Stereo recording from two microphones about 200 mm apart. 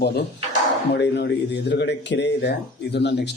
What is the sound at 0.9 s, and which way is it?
Speech, 60° left (ahead or behind).